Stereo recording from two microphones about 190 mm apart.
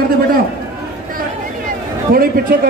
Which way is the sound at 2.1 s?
50° right (ahead or behind).